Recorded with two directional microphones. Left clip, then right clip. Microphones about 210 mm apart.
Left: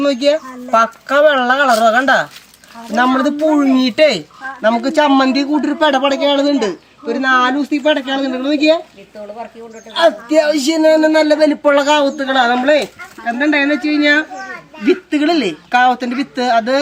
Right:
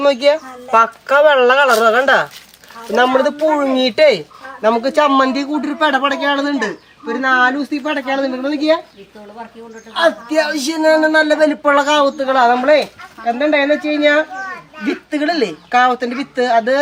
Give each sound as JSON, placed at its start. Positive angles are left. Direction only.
{"t": 0.0, "sound": "speech", "side_deg": -25}
{"t": 8.4, "sound": "speech", "side_deg": -20}
{"t": 10.0, "sound": "speech", "side_deg": -20}